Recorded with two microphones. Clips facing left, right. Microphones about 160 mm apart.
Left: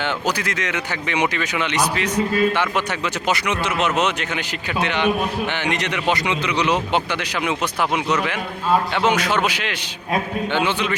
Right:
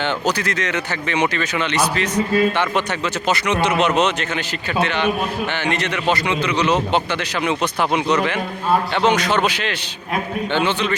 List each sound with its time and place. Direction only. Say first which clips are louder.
0.0 s speech: right 2 dB; 10° left (ahead or behind)